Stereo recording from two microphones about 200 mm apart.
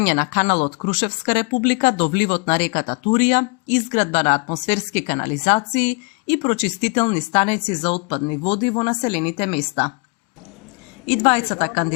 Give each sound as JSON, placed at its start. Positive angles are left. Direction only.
{"t": 0.0, "sound": "speech", "side_deg": 40}
{"t": 11.0, "sound": "speech", "side_deg": 30}